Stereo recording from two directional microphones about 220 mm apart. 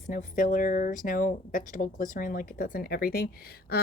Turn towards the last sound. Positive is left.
turn(degrees=45)  # may be behind; listen again after turning